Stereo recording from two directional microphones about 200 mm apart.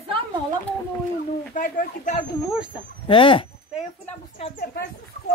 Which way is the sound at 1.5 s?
40° left (ahead or behind).